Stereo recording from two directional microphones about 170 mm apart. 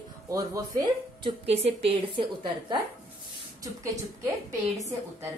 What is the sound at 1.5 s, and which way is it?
A woman's voice, 35° right (ahead or behind).